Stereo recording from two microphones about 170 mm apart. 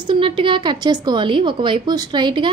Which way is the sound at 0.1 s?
30° right (ahead or behind).